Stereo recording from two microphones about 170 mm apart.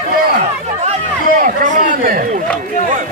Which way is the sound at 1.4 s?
50° right (ahead or behind).